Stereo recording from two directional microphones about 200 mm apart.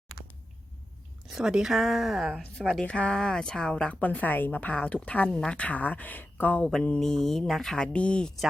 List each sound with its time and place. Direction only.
1.3 s speech: 5° right (ahead or behind)